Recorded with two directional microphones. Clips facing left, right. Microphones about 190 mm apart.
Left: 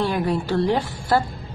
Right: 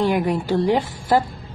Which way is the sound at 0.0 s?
15° right (ahead or behind).